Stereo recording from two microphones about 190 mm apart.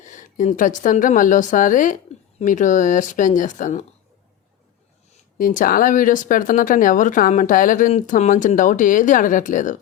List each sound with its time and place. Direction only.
0.0 s a woman's voice: 40° left (ahead or behind)
5.4 s speech: 45° left (ahead or behind)